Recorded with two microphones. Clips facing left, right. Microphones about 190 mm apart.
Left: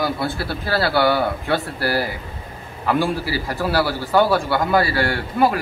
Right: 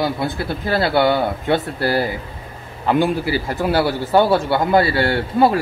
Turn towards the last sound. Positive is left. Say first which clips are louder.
# right 3 dB
turn(degrees=-25)  # may be behind; listen again after turning